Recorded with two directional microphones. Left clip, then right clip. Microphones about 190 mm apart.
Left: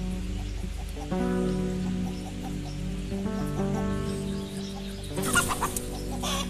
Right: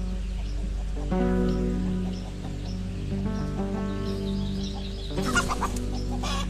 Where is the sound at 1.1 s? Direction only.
Centre (ahead or behind).